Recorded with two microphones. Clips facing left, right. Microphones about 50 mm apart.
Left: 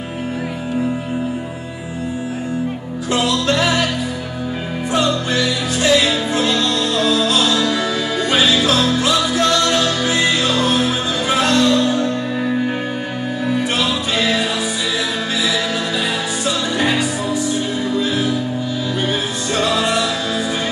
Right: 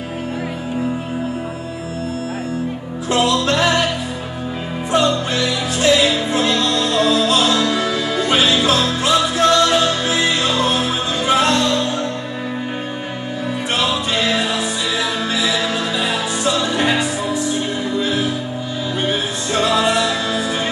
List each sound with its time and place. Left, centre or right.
3.5 s music: centre
4.9 s music: centre
7.5 s music: centre
13.5 s music: centre